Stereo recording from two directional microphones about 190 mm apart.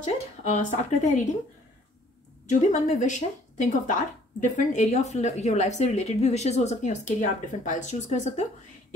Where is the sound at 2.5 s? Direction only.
40° left (ahead or behind).